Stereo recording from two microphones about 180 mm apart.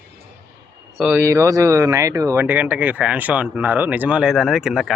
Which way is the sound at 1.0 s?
15° right (ahead or behind).